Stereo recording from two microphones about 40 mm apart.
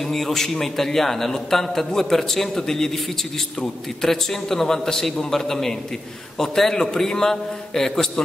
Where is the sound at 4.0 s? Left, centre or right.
Centre.